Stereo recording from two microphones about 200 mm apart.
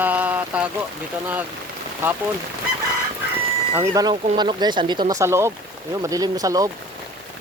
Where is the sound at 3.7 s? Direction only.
15° right (ahead or behind).